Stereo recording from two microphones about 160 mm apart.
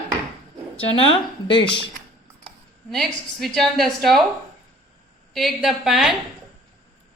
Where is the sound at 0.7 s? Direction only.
35° left (ahead or behind).